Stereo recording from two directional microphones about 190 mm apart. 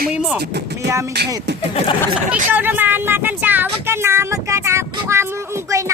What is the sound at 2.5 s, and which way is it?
Speech, 10° right (ahead or behind).